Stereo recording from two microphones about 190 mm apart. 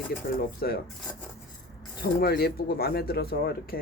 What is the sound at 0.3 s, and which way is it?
Speech, 50° left (ahead or behind).